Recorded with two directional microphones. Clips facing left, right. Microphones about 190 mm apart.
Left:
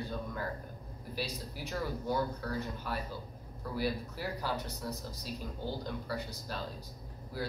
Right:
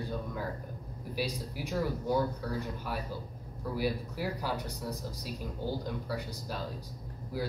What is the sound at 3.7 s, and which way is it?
Speech, 10° right (ahead or behind).